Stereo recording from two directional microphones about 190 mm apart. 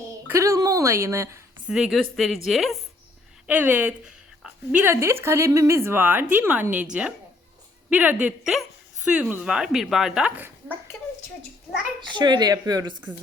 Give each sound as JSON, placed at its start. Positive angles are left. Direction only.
{"t": 0.3, "sound": "a sound", "side_deg": -15}
{"t": 1.7, "sound": "speech", "side_deg": 0}
{"t": 7.9, "sound": "speech", "side_deg": -10}
{"t": 11.9, "sound": "speech", "side_deg": -25}